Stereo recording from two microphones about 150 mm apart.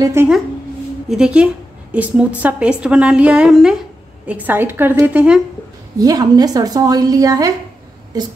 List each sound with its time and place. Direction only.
0.0 s a woman's voice: 15° right (ahead or behind)
1.0 s a woman's voice: 5° right (ahead or behind)
5.9 s a woman's voice: 25° right (ahead or behind)